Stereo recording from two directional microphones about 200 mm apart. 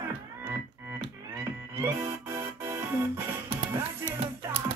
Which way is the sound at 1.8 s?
15° right (ahead or behind).